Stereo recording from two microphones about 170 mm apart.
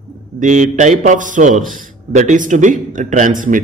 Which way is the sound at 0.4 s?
45° right (ahead or behind).